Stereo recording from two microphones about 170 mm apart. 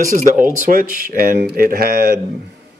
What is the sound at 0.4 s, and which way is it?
Speech, 50° right (ahead or behind).